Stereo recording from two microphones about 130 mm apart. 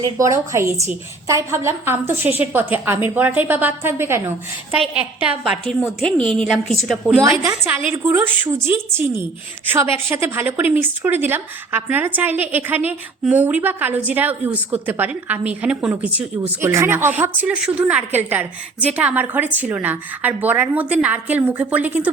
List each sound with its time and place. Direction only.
0.0 s a woman's voice: 25° right (ahead or behind); by 7.0 s centre (ahead or behind)
7.1 s a woman's voice: 20° right (ahead or behind)